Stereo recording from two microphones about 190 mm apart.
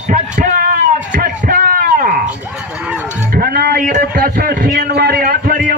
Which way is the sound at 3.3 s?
50° right (ahead or behind).